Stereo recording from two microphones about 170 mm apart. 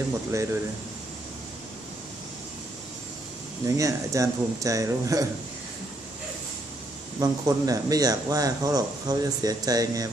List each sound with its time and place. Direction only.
0.3 s speech: 15° right (ahead or behind)
3.6 s speech: 20° right (ahead or behind)
7.2 s speech: 20° right (ahead or behind)